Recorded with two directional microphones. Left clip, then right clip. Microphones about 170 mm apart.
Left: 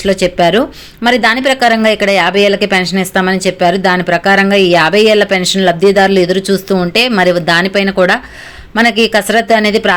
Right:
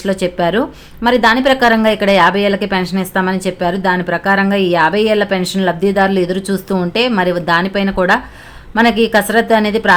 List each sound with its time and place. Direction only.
0.0 s speech: 10° left (ahead or behind)